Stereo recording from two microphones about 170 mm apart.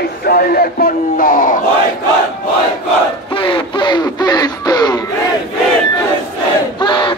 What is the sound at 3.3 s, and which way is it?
Music, 30° left (ahead or behind).